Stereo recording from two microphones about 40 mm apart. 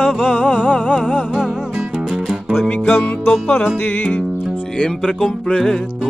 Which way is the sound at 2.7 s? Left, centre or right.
Left.